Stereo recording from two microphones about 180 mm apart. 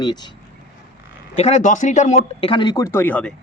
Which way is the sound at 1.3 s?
35° left (ahead or behind).